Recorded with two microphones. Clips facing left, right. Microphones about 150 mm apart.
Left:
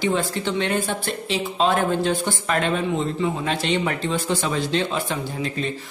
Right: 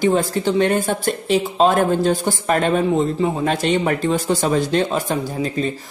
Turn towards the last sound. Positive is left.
turn(degrees=-40)  # may be behind; listen again after turning